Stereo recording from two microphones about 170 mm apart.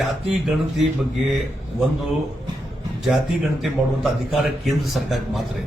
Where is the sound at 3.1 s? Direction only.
Centre (ahead or behind).